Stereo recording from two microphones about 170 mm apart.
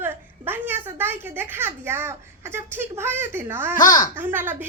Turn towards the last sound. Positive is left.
turn(degrees=-10)  # may be behind; listen again after turning